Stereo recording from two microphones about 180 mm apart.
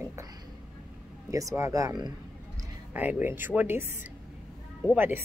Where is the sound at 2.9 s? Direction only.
10° right (ahead or behind).